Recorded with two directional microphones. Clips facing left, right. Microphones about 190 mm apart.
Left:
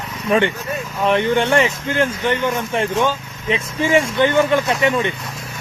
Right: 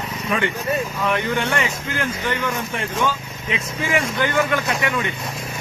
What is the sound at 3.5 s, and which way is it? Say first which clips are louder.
Speech: left 6 dB; 30° left (ahead or behind).